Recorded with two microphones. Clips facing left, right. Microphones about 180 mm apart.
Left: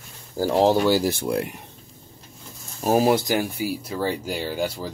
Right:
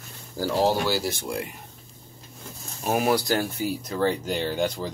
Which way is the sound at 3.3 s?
10° left (ahead or behind).